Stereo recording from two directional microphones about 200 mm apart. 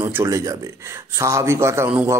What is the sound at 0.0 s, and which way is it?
A man's voice, 15° right (ahead or behind).